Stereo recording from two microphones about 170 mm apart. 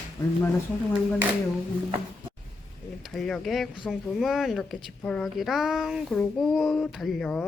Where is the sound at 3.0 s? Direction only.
5° left (ahead or behind).